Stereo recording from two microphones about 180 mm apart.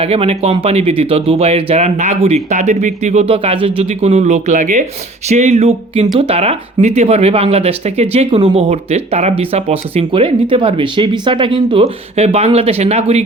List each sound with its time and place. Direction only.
0.0 s speech: 35° right (ahead or behind)